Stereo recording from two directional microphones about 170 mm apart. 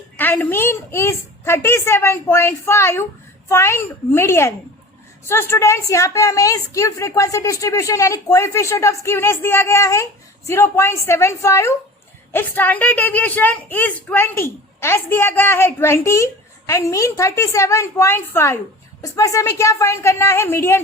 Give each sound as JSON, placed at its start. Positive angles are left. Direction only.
{"t": 0.2, "sound": "a woman's voice", "side_deg": 10}